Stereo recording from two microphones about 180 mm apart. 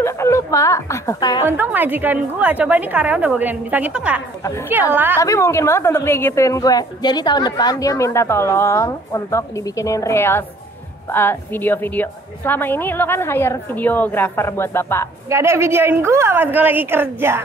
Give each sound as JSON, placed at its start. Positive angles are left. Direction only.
{"t": 0.0, "sound": "a woman's voice", "side_deg": 15}
{"t": 1.4, "sound": "a woman's voice", "side_deg": -10}
{"t": 4.4, "sound": "a woman's voice", "side_deg": 15}
{"t": 4.9, "sound": "a woman's voice", "side_deg": -10}
{"t": 5.2, "sound": "a woman's voice", "side_deg": 15}
{"t": 15.2, "sound": "a woman's voice", "side_deg": -15}